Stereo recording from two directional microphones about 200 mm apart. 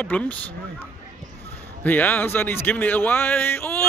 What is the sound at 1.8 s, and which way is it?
Speech, 10° left (ahead or behind).